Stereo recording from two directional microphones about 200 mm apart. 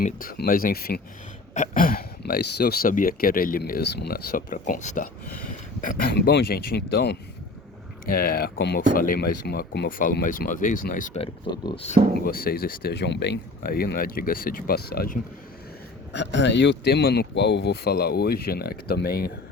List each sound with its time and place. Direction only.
0.0 s speech: 45° left (ahead or behind)
1.5 s speech: 40° left (ahead or behind); by 9.9 s 55° left (ahead or behind)
10.0 s speech: 45° left (ahead or behind)
11.2 s speech: 20° left (ahead or behind)
12.2 s speech: 45° left (ahead or behind)
16.1 s speech: 60° left (ahead or behind)